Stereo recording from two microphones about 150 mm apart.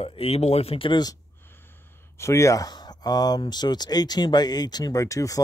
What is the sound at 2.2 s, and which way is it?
Speech, 20° left (ahead or behind).